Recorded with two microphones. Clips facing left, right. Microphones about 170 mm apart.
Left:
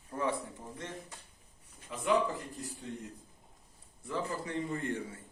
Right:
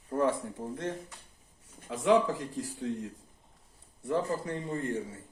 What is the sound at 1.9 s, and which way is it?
Speech, 90° right.